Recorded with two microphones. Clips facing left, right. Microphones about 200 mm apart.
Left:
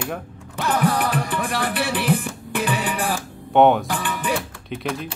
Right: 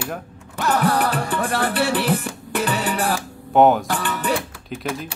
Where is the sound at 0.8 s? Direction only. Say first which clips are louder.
Right 1 dB; 65° right (ahead or behind).